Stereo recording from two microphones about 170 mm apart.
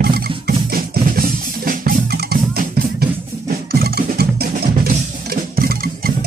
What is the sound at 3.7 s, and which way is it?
Music, 65° right (ahead or behind).